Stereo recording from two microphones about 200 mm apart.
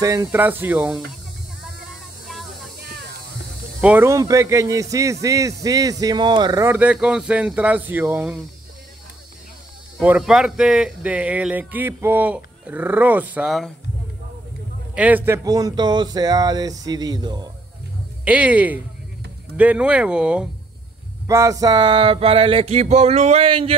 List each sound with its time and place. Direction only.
0.0 s speech: 15° right (ahead or behind)
2.2 s a sound: centre (ahead or behind)
3.8 s speech: 10° right (ahead or behind)
9.9 s speech: 5° right (ahead or behind)
15.0 s speech: 10° right (ahead or behind)
18.2 s speech: 5° right (ahead or behind); by 23.7 s 25° right (ahead or behind)